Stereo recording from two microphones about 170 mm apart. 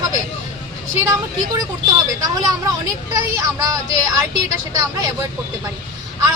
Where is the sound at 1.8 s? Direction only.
20° right (ahead or behind).